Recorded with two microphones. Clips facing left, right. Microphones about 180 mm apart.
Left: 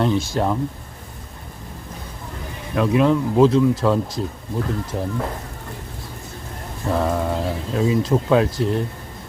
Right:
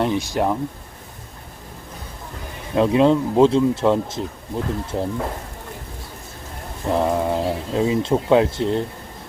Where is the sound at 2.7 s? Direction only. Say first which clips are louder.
Right 2 dB; 25° right (ahead or behind).